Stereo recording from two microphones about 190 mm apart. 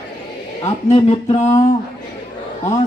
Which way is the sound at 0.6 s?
35° left (ahead or behind).